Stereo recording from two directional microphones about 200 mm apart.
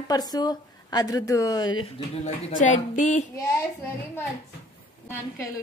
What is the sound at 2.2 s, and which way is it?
Speech, 35° left (ahead or behind).